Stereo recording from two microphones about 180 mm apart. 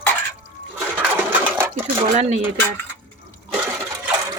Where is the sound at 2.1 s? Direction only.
35° right (ahead or behind).